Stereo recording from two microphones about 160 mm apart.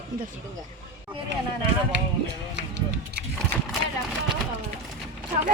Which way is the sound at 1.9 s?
90° right.